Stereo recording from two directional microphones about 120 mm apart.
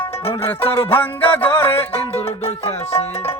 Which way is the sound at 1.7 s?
55° left (ahead or behind).